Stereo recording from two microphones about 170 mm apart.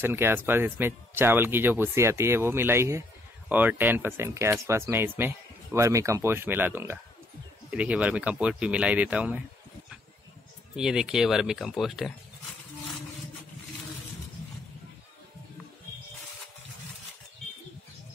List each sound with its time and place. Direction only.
0.0 s speech: 15° right (ahead or behind)
10.8 s speech: 5° right (ahead or behind)